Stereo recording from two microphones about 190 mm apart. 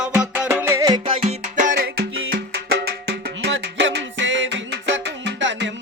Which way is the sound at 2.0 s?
70° right (ahead or behind).